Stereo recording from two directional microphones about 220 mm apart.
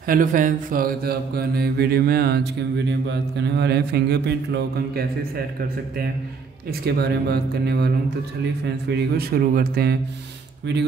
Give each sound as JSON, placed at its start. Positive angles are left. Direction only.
{"t": 0.0, "sound": "mantra", "side_deg": -40}
{"t": 6.7, "sound": "mantra", "side_deg": -45}